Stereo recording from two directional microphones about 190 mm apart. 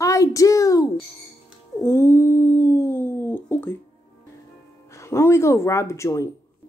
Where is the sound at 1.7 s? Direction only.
15° left (ahead or behind).